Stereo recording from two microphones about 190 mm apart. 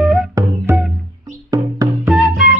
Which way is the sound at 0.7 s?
10° right (ahead or behind).